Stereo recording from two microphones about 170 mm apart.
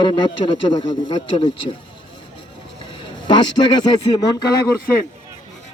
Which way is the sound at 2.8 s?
30° left (ahead or behind).